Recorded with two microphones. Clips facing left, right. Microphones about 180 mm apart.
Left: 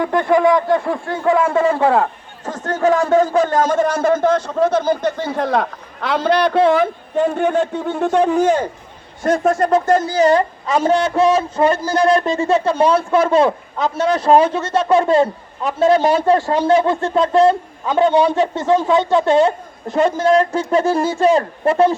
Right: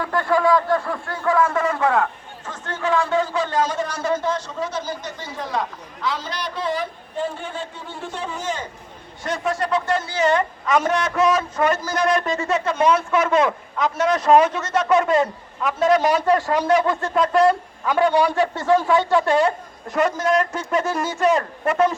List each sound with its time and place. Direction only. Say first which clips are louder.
0.0 s a woman's voice: left 5 dB; 20° left (ahead or behind)
2.5 s speech: left 7 dB; 40° left (ahead or behind); by 8.7 s 60° left (ahead or behind)
9.2 s a woman's voice: left 8 dB; 50° left (ahead or behind); by 21.9 s 30° left (ahead or behind)